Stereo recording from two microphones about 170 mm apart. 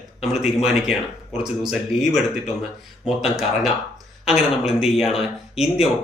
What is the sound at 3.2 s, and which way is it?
Speech, centre (ahead or behind).